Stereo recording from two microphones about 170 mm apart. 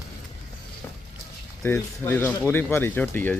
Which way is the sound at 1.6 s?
15° left (ahead or behind).